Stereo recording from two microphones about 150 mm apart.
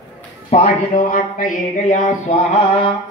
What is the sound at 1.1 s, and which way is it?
Mantra, 65° left (ahead or behind).